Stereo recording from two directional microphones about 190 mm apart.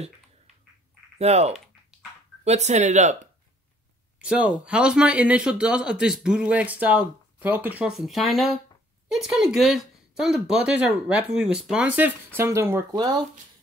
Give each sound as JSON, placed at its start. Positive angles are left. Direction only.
{"t": 1.1, "sound": "speech", "side_deg": -35}
{"t": 4.2, "sound": "speech", "side_deg": -5}